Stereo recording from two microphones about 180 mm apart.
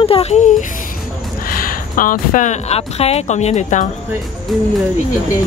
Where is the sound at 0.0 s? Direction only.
35° left (ahead or behind).